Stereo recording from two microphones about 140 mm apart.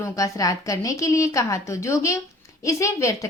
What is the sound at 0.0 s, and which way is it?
A woman's voice, 25° left (ahead or behind).